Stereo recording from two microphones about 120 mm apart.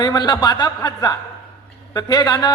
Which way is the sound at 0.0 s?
40° left (ahead or behind).